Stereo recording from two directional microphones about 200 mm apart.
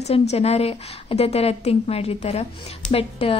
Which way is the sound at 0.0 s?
30° left (ahead or behind).